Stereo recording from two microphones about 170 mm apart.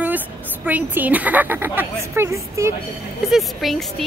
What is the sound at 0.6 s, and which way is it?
Speech, 10° right (ahead or behind).